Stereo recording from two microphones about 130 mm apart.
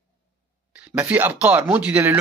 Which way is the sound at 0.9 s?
15° right (ahead or behind).